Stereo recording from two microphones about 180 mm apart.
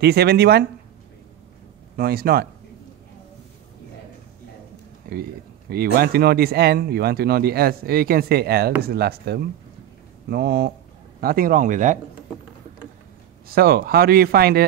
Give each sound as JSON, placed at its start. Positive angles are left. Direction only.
{"t": 0.0, "sound": "speech", "side_deg": -65}
{"t": 2.0, "sound": "speech", "side_deg": -60}
{"t": 5.1, "sound": "speech", "side_deg": -60}
{"t": 13.5, "sound": "speech", "side_deg": -55}